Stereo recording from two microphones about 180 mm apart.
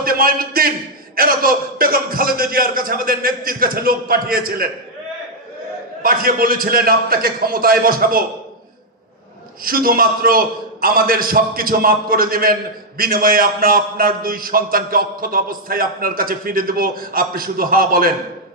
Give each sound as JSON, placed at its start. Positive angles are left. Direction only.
{"t": 0.0, "sound": "a man's voice", "side_deg": -55}
{"t": 6.0, "sound": "a man's voice", "side_deg": -55}
{"t": 9.7, "sound": "a man's voice", "side_deg": -55}